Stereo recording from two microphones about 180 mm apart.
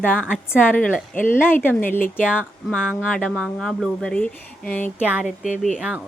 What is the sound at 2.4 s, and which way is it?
Speech, 5° right (ahead or behind).